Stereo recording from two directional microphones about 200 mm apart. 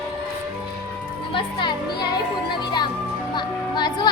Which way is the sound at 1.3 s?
25° left (ahead or behind).